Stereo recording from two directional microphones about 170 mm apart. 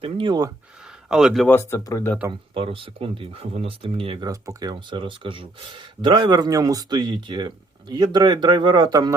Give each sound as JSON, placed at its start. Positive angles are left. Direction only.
{"t": 0.0, "sound": "speech", "side_deg": -30}
{"t": 0.9, "sound": "a sound", "side_deg": -5}
{"t": 1.5, "sound": "speech", "side_deg": 15}
{"t": 2.6, "sound": "speech", "side_deg": -30}
{"t": 4.3, "sound": "speech", "side_deg": -20}